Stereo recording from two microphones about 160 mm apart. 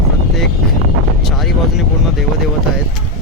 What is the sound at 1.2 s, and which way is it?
Vehicle, centre (ahead or behind).